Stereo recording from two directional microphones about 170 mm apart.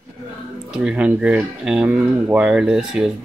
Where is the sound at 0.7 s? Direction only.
5° right (ahead or behind).